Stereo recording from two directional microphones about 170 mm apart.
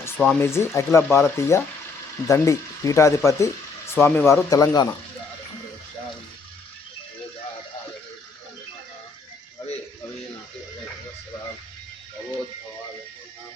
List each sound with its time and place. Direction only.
0.2 s speech: 5° left (ahead or behind)
0.4 s speech: 15° left (ahead or behind)